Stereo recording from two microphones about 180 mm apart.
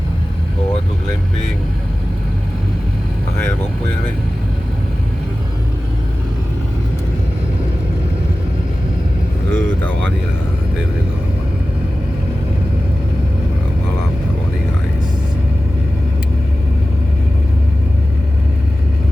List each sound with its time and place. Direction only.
9.5 s vehicle: 10° left (ahead or behind)